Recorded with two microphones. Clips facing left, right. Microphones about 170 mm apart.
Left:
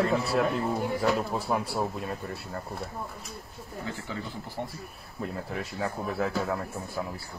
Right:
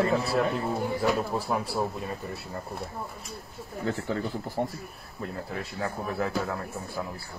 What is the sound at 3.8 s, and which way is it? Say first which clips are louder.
Speech: right 8 dB; 50° right (ahead or behind).